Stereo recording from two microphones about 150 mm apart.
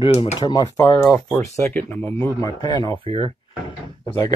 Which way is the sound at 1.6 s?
15° left (ahead or behind).